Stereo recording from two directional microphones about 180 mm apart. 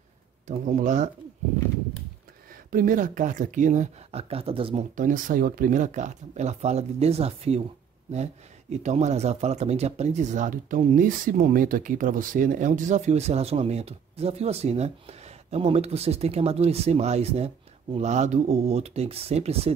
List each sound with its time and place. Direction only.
0.5 s speech: 40° right (ahead or behind)
2.5 s speech: 50° right (ahead or behind); by 4.8 s 30° right (ahead or behind)
4.9 s speech: 50° right (ahead or behind)
8.8 s speech: 40° right (ahead or behind)